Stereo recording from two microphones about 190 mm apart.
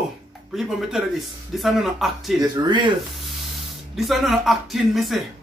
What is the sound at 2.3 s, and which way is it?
Speech, 20° right (ahead or behind).